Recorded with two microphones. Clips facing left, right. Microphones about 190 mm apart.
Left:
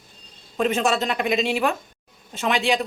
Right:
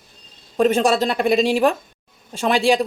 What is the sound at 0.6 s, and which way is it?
Speech, 35° right (ahead or behind).